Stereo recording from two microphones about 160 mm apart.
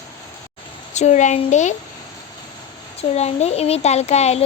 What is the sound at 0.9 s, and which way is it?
Speech, 45° left (ahead or behind).